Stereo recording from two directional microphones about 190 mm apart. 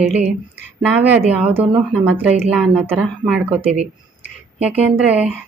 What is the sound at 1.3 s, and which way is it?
Speech, 5° right (ahead or behind).